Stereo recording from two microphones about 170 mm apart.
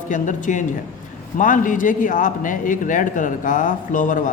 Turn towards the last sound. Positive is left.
turn(degrees=50)  # may be behind; listen again after turning